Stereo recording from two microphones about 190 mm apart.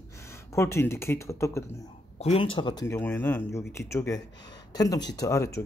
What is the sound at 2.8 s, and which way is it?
Speech, 10° left (ahead or behind).